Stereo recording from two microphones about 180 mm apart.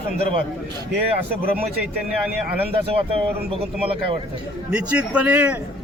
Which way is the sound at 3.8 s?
30° right (ahead or behind).